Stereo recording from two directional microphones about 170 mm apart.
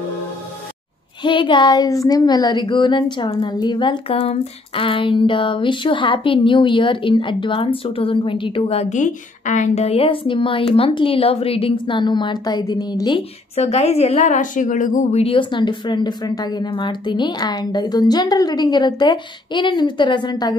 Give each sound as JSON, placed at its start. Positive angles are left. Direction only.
{"t": 1.2, "sound": "speech", "side_deg": 30}
{"t": 13.6, "sound": "speech", "side_deg": 40}